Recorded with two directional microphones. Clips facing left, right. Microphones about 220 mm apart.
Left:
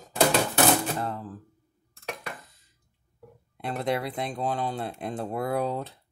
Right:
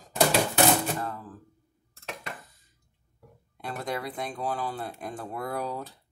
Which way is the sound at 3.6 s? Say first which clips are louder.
Left 5 dB; 25° left (ahead or behind).